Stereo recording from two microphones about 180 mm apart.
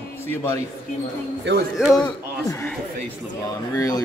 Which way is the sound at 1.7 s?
5° right (ahead or behind).